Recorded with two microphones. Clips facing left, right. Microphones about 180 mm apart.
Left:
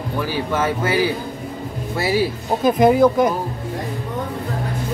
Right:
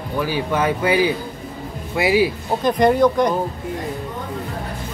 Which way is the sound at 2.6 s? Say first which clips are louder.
Left 2 dB; 5° left (ahead or behind).